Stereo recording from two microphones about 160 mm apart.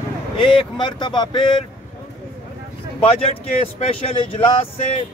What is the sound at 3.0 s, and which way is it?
Speech, 35° left (ahead or behind).